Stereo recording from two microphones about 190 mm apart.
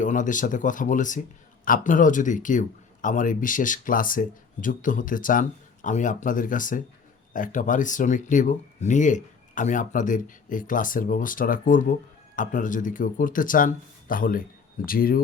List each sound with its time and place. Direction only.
0.0 s speech: 40° left (ahead or behind)